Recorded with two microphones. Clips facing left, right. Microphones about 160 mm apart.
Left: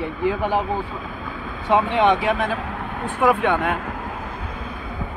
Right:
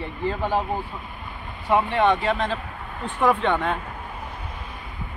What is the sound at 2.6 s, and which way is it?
Vehicle, 80° left.